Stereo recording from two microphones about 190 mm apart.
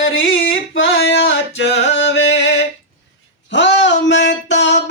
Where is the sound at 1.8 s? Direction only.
70° left (ahead or behind).